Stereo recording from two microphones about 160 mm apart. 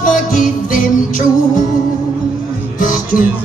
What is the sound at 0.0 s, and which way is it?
Music, 55° left (ahead or behind).